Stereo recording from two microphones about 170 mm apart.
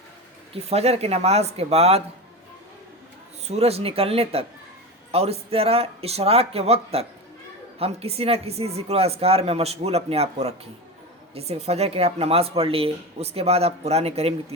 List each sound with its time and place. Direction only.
0.5 s speech: 40° right (ahead or behind)
3.4 s speech: 40° right (ahead or behind)